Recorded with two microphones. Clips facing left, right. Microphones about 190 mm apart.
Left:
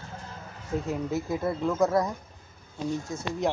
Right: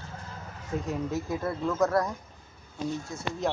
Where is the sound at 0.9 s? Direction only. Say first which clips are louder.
Left 1 dB; 10° left (ahead or behind).